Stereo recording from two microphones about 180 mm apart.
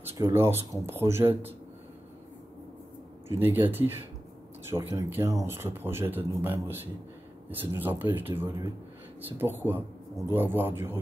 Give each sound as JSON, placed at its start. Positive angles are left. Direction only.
{"t": 0.1, "sound": "speech", "side_deg": -15}
{"t": 3.3, "sound": "speech", "side_deg": -10}